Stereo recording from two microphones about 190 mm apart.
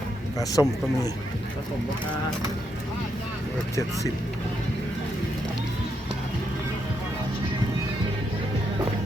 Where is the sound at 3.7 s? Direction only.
15° left (ahead or behind).